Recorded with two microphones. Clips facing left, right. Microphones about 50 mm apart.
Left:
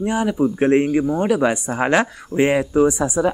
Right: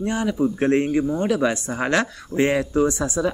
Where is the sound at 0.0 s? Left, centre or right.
Centre.